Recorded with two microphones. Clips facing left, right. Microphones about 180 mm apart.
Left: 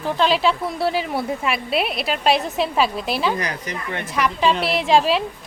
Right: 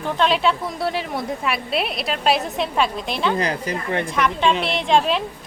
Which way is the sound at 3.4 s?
30° right (ahead or behind).